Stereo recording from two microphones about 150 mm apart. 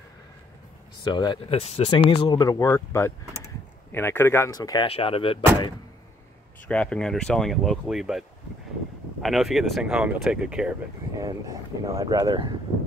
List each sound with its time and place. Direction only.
1.0 s speech: 30° left (ahead or behind)
1.5 s speech: 45° left (ahead or behind)
2.0 s speech: 30° left (ahead or behind)
4.8 s speech: 40° left (ahead or behind)
6.7 s speech: 5° left (ahead or behind)
11.1 s speech: 25° right (ahead or behind)